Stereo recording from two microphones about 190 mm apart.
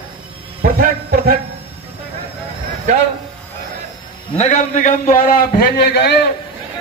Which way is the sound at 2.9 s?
40° right (ahead or behind).